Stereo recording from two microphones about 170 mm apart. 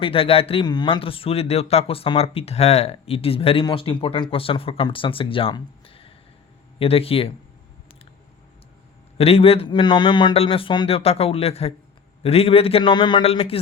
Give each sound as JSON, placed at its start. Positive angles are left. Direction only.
{"t": 0.0, "sound": "speech", "side_deg": 35}
{"t": 9.1, "sound": "speech", "side_deg": 35}